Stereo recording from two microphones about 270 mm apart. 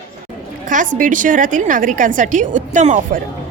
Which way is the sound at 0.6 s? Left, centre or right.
Right.